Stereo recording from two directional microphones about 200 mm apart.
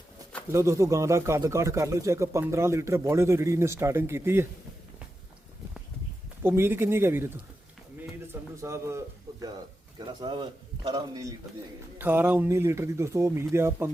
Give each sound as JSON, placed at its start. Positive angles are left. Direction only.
{"t": 0.5, "sound": "a man's voice", "side_deg": -15}
{"t": 6.4, "sound": "a man's voice", "side_deg": -10}
{"t": 8.3, "sound": "a sound", "side_deg": -15}
{"t": 10.2, "sound": "a man's voice", "side_deg": -20}